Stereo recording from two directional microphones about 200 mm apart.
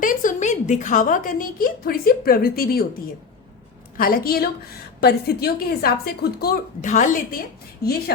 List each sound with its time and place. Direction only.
0.0 s a woman's voice: 40° left (ahead or behind)
3.9 s speech: 45° left (ahead or behind)